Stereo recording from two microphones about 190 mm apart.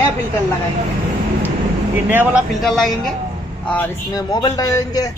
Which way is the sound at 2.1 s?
10° right (ahead or behind).